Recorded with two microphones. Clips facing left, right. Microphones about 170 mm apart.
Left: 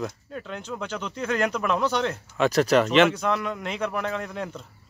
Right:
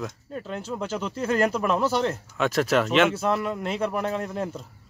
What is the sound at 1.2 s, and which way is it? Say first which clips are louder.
Speech: right 2 dB; 35° right (ahead or behind).